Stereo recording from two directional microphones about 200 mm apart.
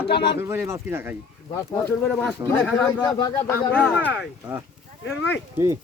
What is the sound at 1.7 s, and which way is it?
Speech, 15° left (ahead or behind).